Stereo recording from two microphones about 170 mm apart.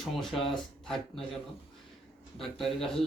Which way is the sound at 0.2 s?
Centre (ahead or behind).